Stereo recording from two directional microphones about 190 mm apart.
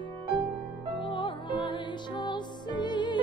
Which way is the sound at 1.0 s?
25° left (ahead or behind).